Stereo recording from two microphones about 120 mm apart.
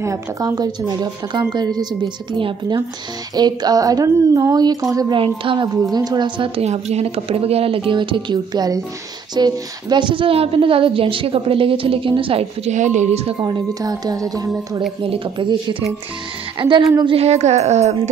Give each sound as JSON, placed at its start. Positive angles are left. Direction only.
{"t": 0.0, "sound": "a woman's voice", "side_deg": -25}
{"t": 5.1, "sound": "a woman's voice", "side_deg": -45}
{"t": 5.9, "sound": "a woman's voice", "side_deg": -35}
{"t": 12.7, "sound": "speech", "side_deg": -85}
{"t": 13.4, "sound": "speech", "side_deg": -35}
{"t": 15.0, "sound": "a woman's voice", "side_deg": -45}
{"t": 16.5, "sound": "a woman's voice", "side_deg": -45}
{"t": 17.0, "sound": "a woman's voice", "side_deg": -55}